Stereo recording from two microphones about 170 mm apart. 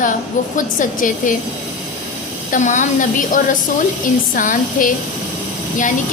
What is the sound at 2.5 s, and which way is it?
A woman's voice, 50° left (ahead or behind).